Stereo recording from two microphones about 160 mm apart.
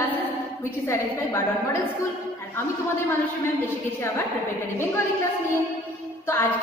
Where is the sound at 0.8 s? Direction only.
15° left (ahead or behind).